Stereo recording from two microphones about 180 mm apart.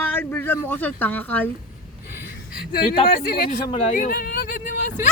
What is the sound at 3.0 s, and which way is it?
Speech, 55° left (ahead or behind).